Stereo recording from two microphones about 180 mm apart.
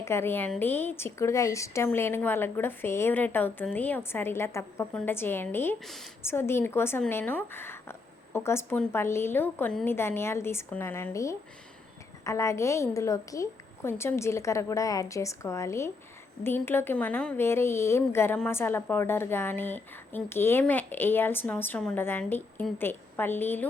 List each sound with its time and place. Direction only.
0.0 s speech: 15° left (ahead or behind)